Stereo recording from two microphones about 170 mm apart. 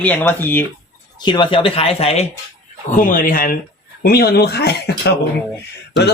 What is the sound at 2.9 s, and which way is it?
Speech, 50° left (ahead or behind).